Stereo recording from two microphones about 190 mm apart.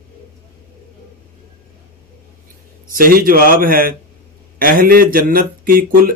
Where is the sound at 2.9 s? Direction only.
50° right (ahead or behind).